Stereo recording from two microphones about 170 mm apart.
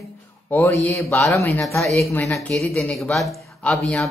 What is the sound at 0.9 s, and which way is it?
Speech, 15° left (ahead or behind).